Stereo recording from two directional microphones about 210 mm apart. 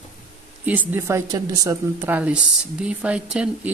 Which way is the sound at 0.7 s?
10° right (ahead or behind).